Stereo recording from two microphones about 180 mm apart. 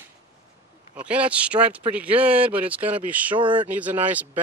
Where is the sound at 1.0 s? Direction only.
5° right (ahead or behind).